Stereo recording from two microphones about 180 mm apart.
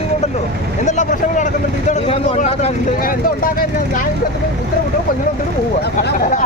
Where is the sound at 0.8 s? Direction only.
45° left (ahead or behind).